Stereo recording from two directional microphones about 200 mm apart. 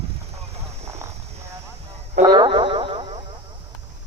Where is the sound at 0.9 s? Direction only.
15° right (ahead or behind).